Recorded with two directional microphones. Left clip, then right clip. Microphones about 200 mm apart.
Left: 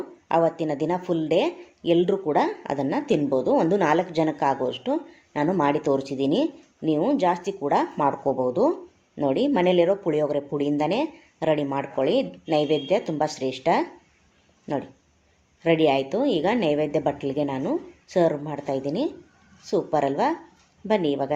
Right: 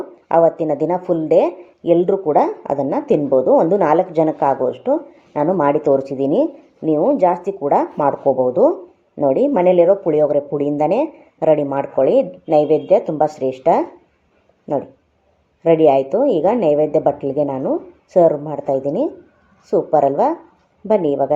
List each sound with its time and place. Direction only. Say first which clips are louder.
0.3 s speech: right 8 dB; 5° left (ahead or behind)
15.6 s speech: right 8 dB; 5° left (ahead or behind)